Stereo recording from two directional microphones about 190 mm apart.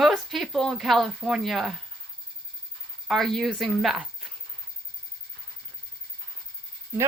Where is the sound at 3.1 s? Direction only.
Centre (ahead or behind).